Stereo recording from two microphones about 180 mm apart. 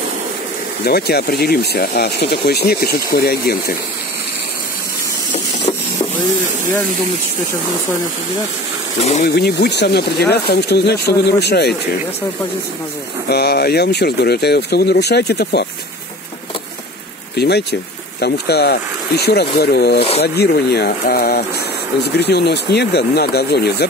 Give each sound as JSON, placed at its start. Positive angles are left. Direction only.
{"t": 0.8, "sound": "speech", "side_deg": 60}
{"t": 9.2, "sound": "speech", "side_deg": 65}
{"t": 13.3, "sound": "speech", "side_deg": 60}
{"t": 17.4, "sound": "speech", "side_deg": 65}